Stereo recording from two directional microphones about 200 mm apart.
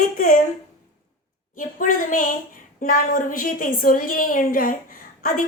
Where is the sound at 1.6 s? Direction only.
40° left (ahead or behind).